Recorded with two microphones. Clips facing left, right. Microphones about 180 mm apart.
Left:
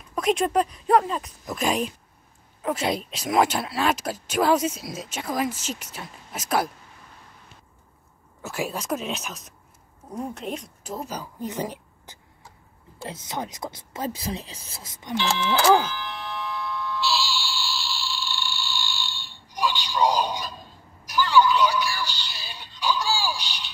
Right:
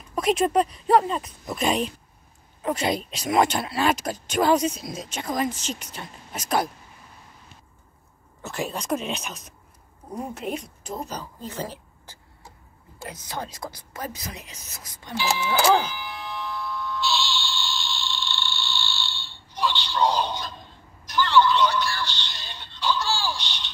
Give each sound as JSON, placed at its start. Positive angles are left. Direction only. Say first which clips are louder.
{"t": 0.1, "sound": "speech", "louder": "right 1 dB", "side_deg": 0}
{"t": 8.4, "sound": "a woman's voice", "louder": "left 1 dB", "side_deg": 5}
{"t": 15.1, "sound": "speech", "louder": "even", "side_deg": -10}
{"t": 15.8, "sound": "a sound", "louder": "left 1 dB", "side_deg": -10}